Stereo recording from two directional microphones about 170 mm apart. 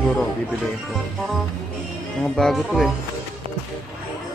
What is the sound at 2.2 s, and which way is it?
Speech, centre (ahead or behind).